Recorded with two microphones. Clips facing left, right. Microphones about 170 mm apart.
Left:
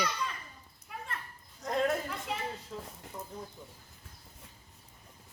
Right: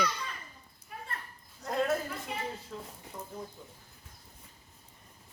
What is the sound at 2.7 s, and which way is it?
Speech, 10° left (ahead or behind).